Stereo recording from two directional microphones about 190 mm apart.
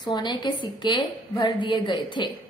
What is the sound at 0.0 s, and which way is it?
A woman's voice, 25° left (ahead or behind).